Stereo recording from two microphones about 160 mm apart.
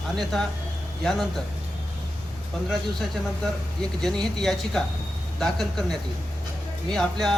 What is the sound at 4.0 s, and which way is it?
Speech, centre (ahead or behind).